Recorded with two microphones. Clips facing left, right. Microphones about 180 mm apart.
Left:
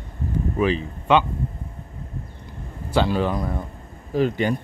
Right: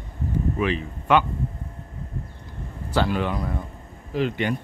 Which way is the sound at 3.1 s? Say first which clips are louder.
Left 3 dB; 35° left (ahead or behind).